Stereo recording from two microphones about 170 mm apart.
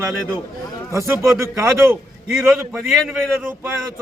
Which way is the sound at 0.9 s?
15° right (ahead or behind).